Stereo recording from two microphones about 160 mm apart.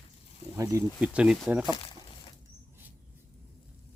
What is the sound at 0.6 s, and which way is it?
Speech, 20° right (ahead or behind).